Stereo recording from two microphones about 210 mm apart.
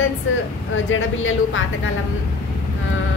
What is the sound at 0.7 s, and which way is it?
A woman's voice, 70° left (ahead or behind).